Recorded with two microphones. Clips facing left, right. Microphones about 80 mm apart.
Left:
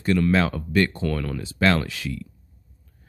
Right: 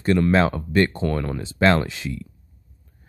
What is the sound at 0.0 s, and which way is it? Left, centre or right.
Speech, right.